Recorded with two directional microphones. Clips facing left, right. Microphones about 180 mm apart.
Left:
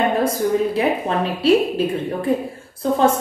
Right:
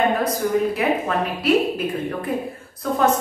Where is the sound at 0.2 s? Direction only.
30° left (ahead or behind).